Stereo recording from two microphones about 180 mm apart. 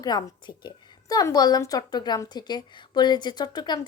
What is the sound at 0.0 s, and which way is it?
A woman's voice, 20° left (ahead or behind).